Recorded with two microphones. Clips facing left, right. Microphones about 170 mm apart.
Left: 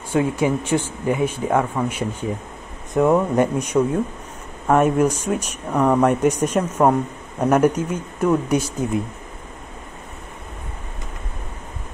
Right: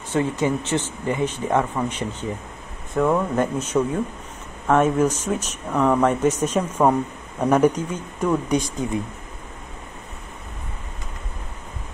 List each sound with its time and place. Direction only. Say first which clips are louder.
0.1 s speech: left 2 dB; 10° left (ahead or behind)